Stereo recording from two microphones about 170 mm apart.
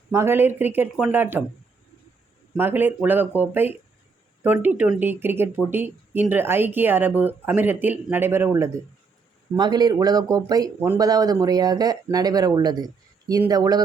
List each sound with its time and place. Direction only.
0.1 s speech: 15° right (ahead or behind)
2.6 s speech: 10° right (ahead or behind)